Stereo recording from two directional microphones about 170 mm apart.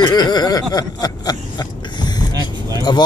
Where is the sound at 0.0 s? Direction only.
25° left (ahead or behind).